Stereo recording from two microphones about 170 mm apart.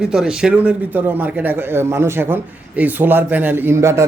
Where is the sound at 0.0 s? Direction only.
5° right (ahead or behind).